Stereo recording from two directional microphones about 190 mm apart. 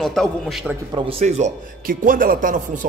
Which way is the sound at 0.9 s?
30° right (ahead or behind).